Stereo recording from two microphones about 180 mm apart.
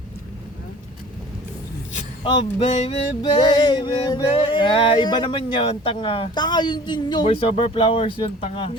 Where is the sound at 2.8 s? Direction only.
25° left (ahead or behind).